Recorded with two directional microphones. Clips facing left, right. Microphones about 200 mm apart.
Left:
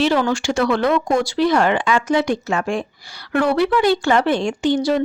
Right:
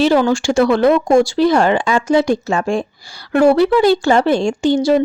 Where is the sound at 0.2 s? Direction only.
30° right (ahead or behind).